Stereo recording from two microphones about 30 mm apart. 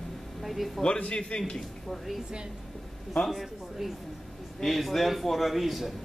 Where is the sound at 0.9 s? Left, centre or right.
Left.